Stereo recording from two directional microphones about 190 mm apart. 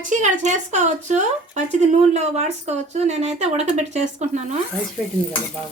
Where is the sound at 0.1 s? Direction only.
40° right (ahead or behind).